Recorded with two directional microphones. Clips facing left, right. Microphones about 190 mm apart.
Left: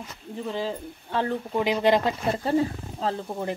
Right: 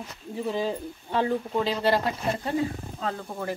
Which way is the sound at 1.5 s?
15° left (ahead or behind).